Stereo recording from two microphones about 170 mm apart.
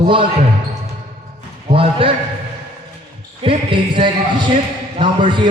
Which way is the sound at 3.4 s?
30° right (ahead or behind).